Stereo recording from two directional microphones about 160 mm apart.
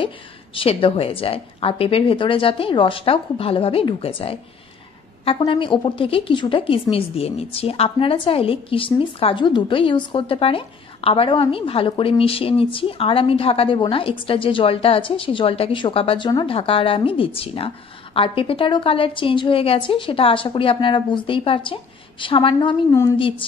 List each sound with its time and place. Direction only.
0.6 s a woman's voice: 35° left (ahead or behind)